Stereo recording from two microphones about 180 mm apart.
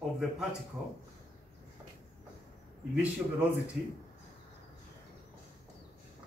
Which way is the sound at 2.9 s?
5° right (ahead or behind).